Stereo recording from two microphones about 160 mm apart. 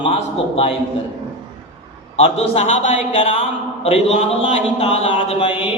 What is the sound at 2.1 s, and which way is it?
A man's voice, 40° left (ahead or behind).